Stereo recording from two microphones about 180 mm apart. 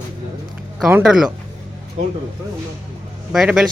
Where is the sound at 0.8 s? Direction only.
Centre (ahead or behind).